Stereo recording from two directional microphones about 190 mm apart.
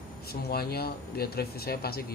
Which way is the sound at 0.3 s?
55° left (ahead or behind).